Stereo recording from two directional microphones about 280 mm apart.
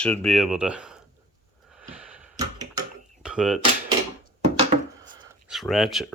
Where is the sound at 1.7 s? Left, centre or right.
Centre.